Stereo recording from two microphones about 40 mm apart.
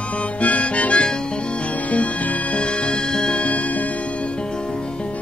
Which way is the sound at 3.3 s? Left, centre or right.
Left.